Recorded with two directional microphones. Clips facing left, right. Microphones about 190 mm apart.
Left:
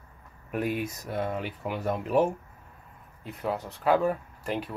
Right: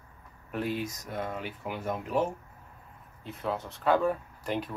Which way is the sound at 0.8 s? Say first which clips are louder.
Left 3 dB; 60° left (ahead or behind).